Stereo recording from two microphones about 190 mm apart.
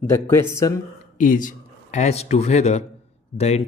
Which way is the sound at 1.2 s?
45° left (ahead or behind).